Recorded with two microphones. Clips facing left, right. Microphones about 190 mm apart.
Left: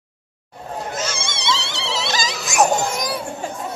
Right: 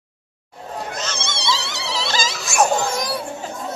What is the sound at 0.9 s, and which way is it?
Goat, 10° left (ahead or behind).